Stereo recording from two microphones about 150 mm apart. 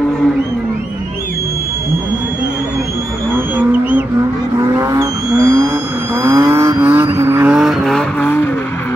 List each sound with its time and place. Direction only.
3.3 s vehicle: 10° right (ahead or behind)
4.6 s vehicle: 20° right (ahead or behind)
7.5 s vehicle: centre (ahead or behind)